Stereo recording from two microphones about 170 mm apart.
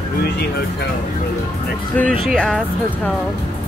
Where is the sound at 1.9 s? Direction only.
10° left (ahead or behind).